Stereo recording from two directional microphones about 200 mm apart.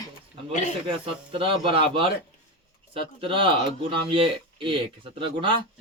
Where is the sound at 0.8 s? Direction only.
25° right (ahead or behind).